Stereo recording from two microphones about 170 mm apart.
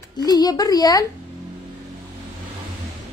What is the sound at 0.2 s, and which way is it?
Speech, 25° left (ahead or behind).